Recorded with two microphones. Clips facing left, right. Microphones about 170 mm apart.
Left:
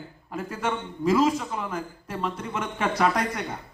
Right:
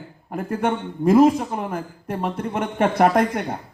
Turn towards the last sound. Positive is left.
turn(degrees=-55)  # may be behind; listen again after turning